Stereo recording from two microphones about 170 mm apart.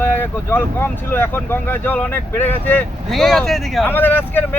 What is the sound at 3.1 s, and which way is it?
Speech, centre (ahead or behind).